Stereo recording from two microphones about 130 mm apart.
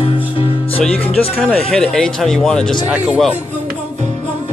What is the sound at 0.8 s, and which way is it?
Music, 10° left (ahead or behind).